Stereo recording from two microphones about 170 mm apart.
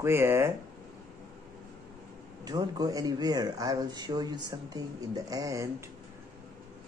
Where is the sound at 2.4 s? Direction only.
25° right (ahead or behind).